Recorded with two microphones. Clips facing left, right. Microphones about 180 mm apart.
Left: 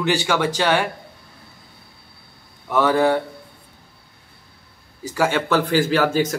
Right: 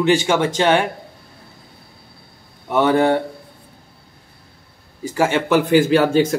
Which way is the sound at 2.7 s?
25° right (ahead or behind).